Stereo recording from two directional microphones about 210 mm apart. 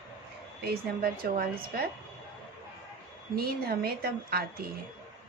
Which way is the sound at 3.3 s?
45° right (ahead or behind).